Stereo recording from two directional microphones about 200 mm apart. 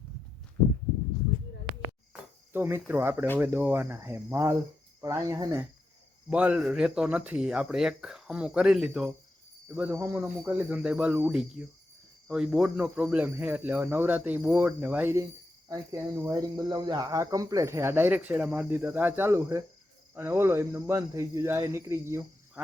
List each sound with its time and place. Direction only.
2.5 s speech: 10° right (ahead or behind)
9.7 s speech: 10° right (ahead or behind)